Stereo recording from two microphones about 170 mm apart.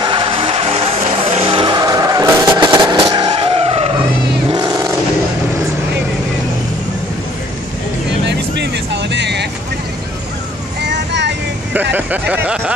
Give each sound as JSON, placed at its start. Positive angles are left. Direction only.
{"t": 0.0, "sound": "vehicle", "side_deg": -30}
{"t": 4.5, "sound": "vehicle", "side_deg": -25}
{"t": 8.3, "sound": "vehicle", "side_deg": -90}
{"t": 10.8, "sound": "vehicle", "side_deg": -90}
{"t": 11.9, "sound": "speech", "side_deg": -10}